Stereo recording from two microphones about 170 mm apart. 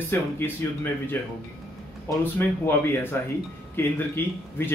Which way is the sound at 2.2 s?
10° left (ahead or behind).